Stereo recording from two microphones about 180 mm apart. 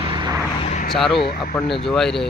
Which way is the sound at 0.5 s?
40° left (ahead or behind).